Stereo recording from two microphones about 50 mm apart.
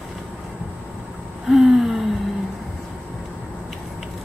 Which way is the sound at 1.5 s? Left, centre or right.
Centre.